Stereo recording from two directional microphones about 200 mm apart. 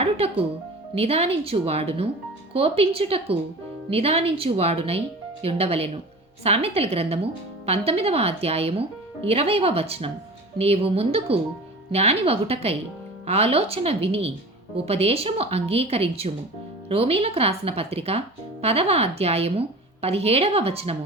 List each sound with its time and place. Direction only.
0.0 s a woman's voice: 30° right (ahead or behind)